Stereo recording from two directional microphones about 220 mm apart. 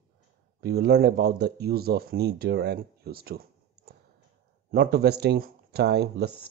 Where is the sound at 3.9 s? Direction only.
45° right (ahead or behind).